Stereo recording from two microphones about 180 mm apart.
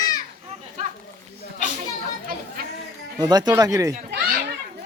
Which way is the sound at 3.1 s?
20° right (ahead or behind).